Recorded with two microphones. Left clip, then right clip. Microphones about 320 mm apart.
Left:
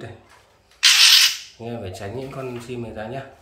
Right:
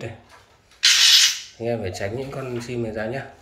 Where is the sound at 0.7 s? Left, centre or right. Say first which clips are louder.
Left 2 dB; centre.